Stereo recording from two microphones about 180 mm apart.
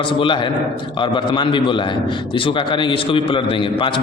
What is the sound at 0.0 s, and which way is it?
A man's voice, 30° left (ahead or behind).